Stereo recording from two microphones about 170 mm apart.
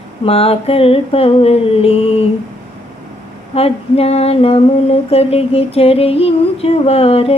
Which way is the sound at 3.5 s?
35° left (ahead or behind).